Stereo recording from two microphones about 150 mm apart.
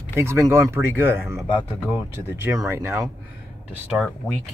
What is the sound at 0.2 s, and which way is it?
Speech, 20° right (ahead or behind).